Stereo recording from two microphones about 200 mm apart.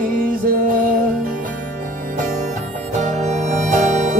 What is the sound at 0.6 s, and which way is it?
Music, 45° right (ahead or behind).